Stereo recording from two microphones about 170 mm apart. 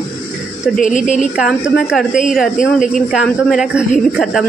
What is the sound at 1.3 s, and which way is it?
Speech, 5° right (ahead or behind).